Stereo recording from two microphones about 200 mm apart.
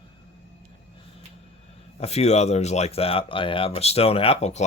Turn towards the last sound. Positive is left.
turn(degrees=35)  # may be behind; listen again after turning